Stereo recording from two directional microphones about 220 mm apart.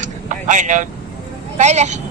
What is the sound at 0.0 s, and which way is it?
Vehicle, 35° right (ahead or behind).